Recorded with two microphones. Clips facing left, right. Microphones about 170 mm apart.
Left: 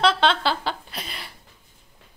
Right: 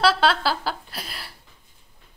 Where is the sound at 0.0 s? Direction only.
5° right (ahead or behind).